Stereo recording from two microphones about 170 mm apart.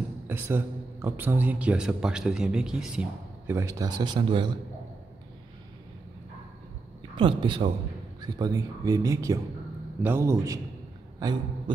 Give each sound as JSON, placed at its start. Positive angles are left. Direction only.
{"t": 0.3, "sound": "a man's voice", "side_deg": -10}
{"t": 7.2, "sound": "a man's voice", "side_deg": -30}